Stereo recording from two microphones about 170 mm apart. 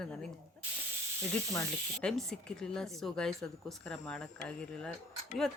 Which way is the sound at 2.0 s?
5° left (ahead or behind).